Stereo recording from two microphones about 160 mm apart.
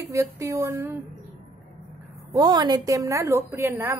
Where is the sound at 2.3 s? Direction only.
25° right (ahead or behind).